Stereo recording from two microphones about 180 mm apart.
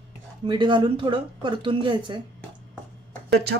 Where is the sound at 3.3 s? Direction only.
65° right (ahead or behind).